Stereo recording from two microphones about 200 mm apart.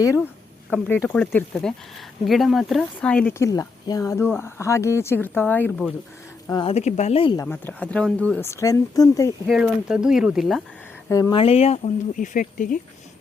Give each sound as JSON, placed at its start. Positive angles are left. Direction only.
{"t": 1.0, "sound": "speech", "side_deg": 5}
{"t": 6.5, "sound": "speech", "side_deg": 25}
{"t": 7.4, "sound": "speech", "side_deg": 10}
{"t": 9.5, "sound": "speech", "side_deg": -5}
{"t": 11.1, "sound": "speech", "side_deg": 20}